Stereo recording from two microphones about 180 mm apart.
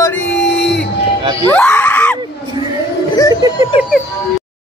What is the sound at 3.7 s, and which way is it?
Speech, 30° left (ahead or behind).